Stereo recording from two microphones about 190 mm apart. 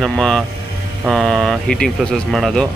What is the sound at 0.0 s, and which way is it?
Speech, centre (ahead or behind).